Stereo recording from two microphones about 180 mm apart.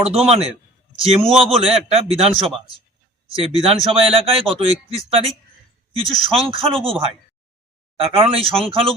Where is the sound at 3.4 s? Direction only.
30° right (ahead or behind).